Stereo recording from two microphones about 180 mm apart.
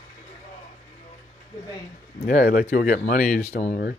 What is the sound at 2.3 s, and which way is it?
Speech, 60° left (ahead or behind).